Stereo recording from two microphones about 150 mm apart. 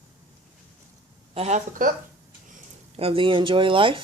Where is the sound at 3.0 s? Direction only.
35° right (ahead or behind).